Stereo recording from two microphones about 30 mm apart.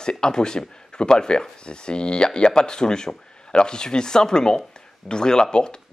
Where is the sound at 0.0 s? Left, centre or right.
Left.